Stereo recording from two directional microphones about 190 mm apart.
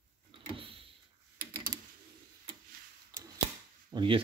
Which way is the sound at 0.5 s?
30° right (ahead or behind).